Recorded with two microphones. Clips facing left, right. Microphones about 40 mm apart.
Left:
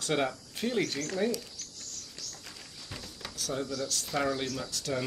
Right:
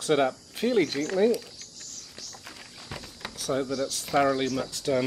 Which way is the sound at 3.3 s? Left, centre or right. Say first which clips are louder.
Right 6 dB; centre.